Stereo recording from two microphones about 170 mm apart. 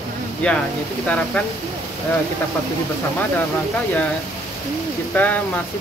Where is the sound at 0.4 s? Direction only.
5° left (ahead or behind).